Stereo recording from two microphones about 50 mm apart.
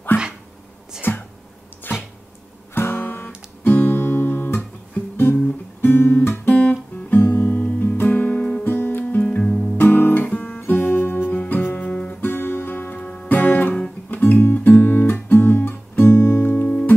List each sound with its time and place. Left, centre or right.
1.0 s a sound: left
2.7 s guitar: left
6.5 s guitar: left
8.6 s music: left
9.8 s guitar: left
10.2 s guitar: left
10.7 s music: left
11.7 s guitar: left
12.2 s guitar: left
13.3 s guitar: left
16.6 s music: left